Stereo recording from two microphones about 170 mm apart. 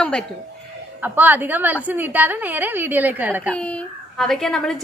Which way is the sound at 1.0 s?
10° right (ahead or behind).